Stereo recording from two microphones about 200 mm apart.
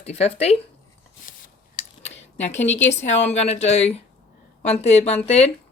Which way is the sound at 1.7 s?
35° left (ahead or behind).